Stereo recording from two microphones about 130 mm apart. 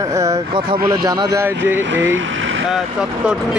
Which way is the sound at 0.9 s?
25° right (ahead or behind).